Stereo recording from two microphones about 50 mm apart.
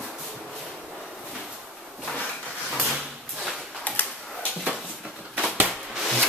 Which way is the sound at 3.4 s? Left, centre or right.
Centre.